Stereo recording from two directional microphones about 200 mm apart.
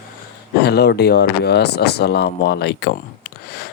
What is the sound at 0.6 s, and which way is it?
Speech, 55° left (ahead or behind).